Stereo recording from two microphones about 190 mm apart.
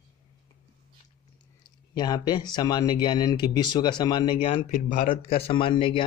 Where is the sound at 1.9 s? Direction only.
20° left (ahead or behind).